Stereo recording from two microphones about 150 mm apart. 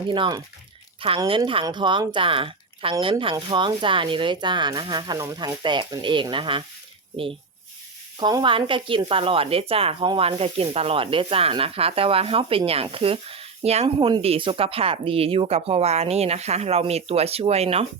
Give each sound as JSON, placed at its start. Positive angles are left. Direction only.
{"t": 0.1, "sound": "speech", "side_deg": -30}
{"t": 8.2, "sound": "speech", "side_deg": -30}